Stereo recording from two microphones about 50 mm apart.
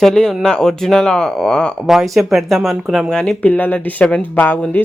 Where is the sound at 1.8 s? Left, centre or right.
Centre.